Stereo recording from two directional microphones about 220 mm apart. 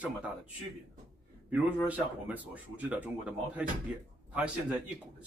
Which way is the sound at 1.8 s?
5° right (ahead or behind).